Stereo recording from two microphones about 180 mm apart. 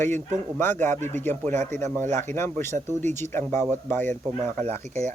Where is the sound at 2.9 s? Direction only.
40° right (ahead or behind).